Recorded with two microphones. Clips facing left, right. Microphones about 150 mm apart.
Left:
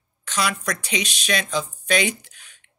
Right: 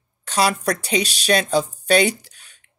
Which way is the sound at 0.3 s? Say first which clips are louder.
Right 6 dB; 35° right (ahead or behind).